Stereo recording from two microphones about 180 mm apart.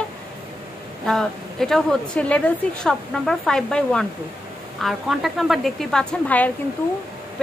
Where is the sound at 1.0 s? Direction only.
Centre (ahead or behind).